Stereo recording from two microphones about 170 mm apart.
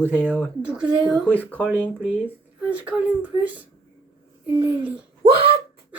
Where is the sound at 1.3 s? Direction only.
10° left (ahead or behind).